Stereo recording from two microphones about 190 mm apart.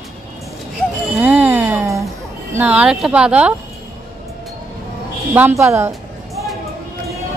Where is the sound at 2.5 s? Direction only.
5° right (ahead or behind).